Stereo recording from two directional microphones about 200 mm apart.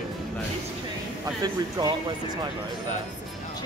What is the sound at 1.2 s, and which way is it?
Speech, 20° right (ahead or behind).